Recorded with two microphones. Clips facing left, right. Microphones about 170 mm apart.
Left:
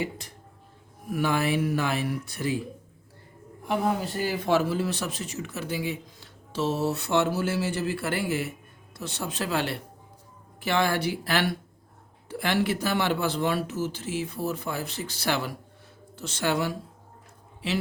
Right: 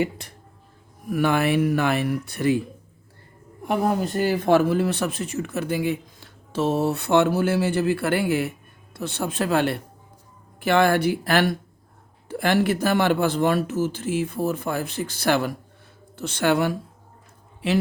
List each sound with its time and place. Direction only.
1.1 s speech: 60° right (ahead or behind)
3.7 s speech: 50° right (ahead or behind)